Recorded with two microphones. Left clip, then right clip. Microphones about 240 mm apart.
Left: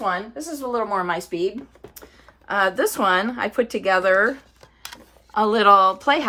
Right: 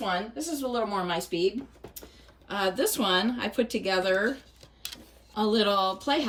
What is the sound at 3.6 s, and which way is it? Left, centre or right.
Speech, centre.